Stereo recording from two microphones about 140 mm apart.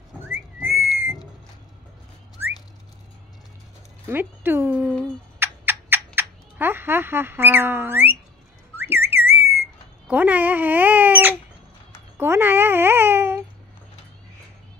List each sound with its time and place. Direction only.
0.3 s whistling: 15° right (ahead or behind)
4.1 s a child's voice: 15° right (ahead or behind)
5.4 s a sound: 15° right (ahead or behind)
8.7 s whistling: 15° right (ahead or behind)
12.2 s a child's voice: 15° right (ahead or behind)